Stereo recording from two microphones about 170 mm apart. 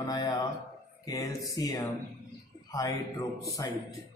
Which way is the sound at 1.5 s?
25° left (ahead or behind).